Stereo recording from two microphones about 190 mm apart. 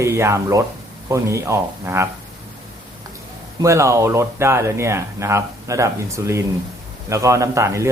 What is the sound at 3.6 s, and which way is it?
Speech, 15° right (ahead or behind).